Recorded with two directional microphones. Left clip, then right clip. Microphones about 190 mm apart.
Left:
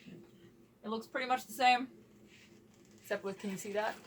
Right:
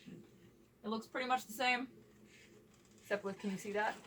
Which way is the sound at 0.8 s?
10° left (ahead or behind).